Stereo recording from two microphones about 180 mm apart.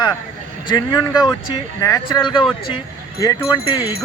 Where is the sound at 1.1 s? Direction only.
25° left (ahead or behind).